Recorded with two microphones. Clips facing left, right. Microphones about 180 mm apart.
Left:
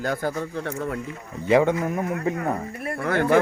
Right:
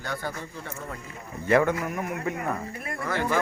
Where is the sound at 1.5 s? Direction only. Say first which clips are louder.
Left 3 dB; 15° left (ahead or behind).